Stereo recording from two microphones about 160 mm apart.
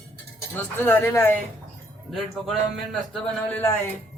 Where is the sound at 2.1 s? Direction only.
Centre (ahead or behind).